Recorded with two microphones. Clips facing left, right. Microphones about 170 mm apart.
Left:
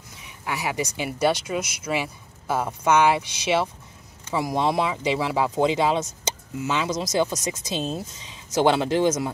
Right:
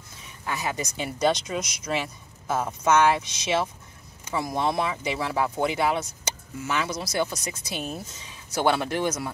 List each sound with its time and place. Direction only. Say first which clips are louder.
0.5 s speech: left 3 dB; 15° left (ahead or behind)